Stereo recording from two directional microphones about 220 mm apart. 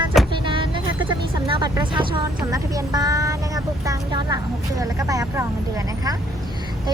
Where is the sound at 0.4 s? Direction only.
20° right (ahead or behind).